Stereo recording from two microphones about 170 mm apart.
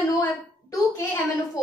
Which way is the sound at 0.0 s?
15° left (ahead or behind).